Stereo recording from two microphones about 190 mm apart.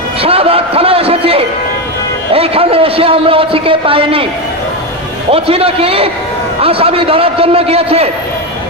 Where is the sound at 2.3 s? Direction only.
30° right (ahead or behind).